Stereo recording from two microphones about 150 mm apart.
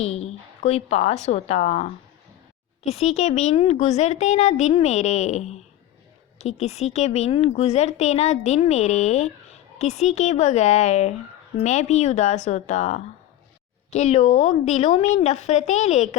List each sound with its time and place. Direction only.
0.0 s speech: 45° left (ahead or behind)